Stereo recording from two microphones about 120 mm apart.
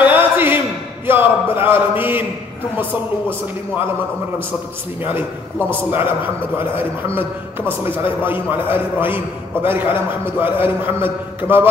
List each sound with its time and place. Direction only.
0.0 s a sound: 15° right (ahead or behind)
1.0 s a man's voice: 20° right (ahead or behind)
5.7 s a man's voice: 15° right (ahead or behind)
8.0 s a man's voice: 20° right (ahead or behind)